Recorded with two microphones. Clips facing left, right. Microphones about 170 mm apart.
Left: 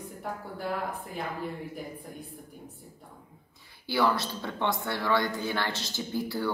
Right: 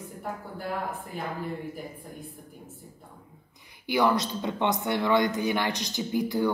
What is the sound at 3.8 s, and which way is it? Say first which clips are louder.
Speech: right 3 dB; 20° right (ahead or behind).